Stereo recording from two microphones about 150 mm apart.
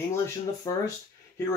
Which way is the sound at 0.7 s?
25° left (ahead or behind).